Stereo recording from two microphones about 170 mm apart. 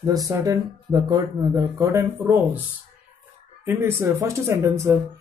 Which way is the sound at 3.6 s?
15° right (ahead or behind).